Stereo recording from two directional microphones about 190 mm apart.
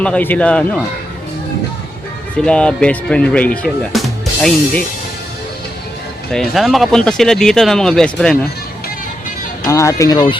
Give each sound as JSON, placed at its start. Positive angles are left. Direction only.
{"t": 0.0, "sound": "speech", "side_deg": 10}
{"t": 2.3, "sound": "speech", "side_deg": 5}
{"t": 6.3, "sound": "speech", "side_deg": 0}
{"t": 9.6, "sound": "speech", "side_deg": 15}